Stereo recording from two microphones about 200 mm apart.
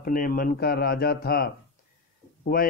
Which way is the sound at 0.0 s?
45° left (ahead or behind).